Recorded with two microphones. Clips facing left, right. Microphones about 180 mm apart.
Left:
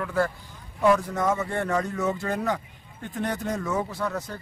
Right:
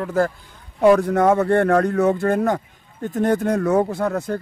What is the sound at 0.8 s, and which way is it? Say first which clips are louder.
Speech: right 8 dB; 60° right (ahead or behind).